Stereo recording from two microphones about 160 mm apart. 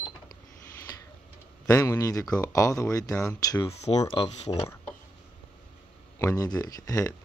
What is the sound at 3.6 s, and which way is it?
Speech, 40° left (ahead or behind).